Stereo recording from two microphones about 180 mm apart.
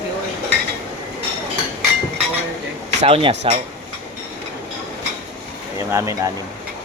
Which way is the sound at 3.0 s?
35° right (ahead or behind).